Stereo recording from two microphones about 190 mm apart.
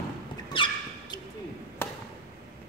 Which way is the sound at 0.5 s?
25° left (ahead or behind).